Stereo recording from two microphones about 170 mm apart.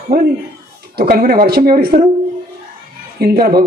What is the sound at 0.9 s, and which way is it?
Speech, 60° right (ahead or behind).